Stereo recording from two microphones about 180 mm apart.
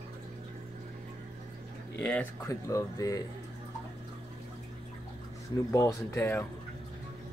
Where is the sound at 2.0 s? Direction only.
10° left (ahead or behind).